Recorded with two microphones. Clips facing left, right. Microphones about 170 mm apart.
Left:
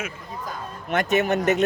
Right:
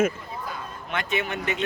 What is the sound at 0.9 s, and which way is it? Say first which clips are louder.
Speech: left 7 dB; 45° left (ahead or behind).